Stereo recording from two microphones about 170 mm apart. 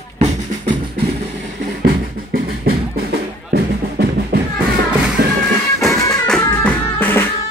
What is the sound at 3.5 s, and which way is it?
Music, 75° right (ahead or behind).